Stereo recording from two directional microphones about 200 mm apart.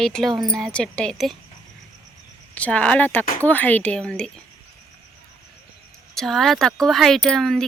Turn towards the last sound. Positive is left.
turn(degrees=0)  # may be behind; listen again after turning